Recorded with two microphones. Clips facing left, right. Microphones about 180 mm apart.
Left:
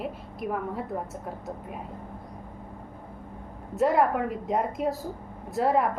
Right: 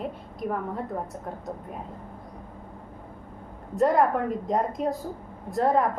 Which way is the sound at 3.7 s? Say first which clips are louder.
Right 1 dB; 5° left (ahead or behind).